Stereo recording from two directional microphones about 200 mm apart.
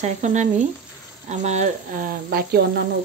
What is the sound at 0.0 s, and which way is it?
Speech, 35° right (ahead or behind).